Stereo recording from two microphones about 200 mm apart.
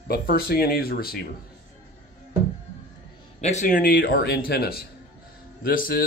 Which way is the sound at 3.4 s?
35° left (ahead or behind).